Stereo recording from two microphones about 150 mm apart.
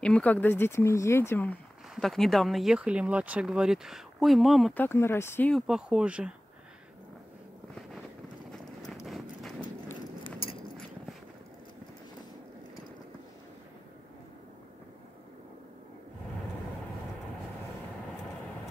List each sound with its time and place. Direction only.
0.0 s speech: 10° left (ahead or behind)
4.7 s speech: 15° left (ahead or behind)
5.5 s speech: 5° right (ahead or behind)
9.0 s clip-clop: centre (ahead or behind)